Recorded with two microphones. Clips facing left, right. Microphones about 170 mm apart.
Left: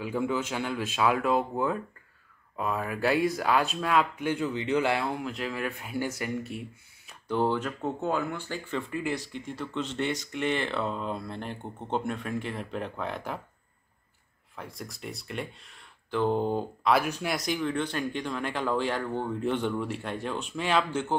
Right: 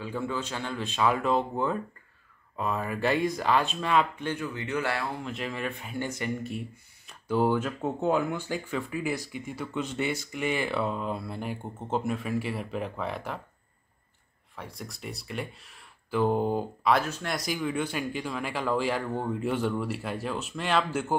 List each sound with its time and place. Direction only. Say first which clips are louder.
0.0 s speech: left 3 dB; 10° left (ahead or behind)
4.3 s speech: left 4 dB; 20° left (ahead or behind)
5.2 s speech: left 1 dB; centre (ahead or behind)
7.2 s speech: right 2 dB; 10° right (ahead or behind)
14.5 s speech: even; centre (ahead or behind)
17.0 s speech: left 2 dB; 15° left (ahead or behind)
17.3 s speech: left 1 dB; centre (ahead or behind)